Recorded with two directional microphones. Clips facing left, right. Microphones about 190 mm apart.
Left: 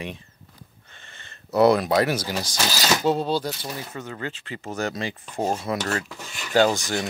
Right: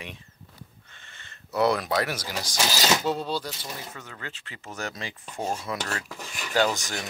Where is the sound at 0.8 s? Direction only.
35° left (ahead or behind).